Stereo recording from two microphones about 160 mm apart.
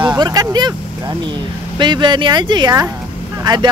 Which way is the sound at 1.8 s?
30° right (ahead or behind).